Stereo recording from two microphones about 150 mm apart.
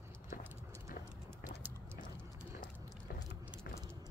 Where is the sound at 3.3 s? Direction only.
15° right (ahead or behind).